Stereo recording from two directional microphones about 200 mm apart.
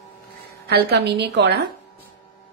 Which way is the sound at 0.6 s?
55° right (ahead or behind).